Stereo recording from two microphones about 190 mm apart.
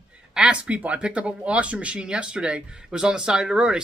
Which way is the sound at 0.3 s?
5° right (ahead or behind).